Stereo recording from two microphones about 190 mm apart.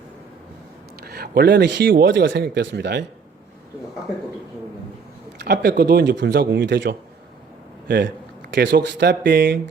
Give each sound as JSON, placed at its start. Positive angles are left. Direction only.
{"t": 1.0, "sound": "speech", "side_deg": -55}
{"t": 5.4, "sound": "speech", "side_deg": -60}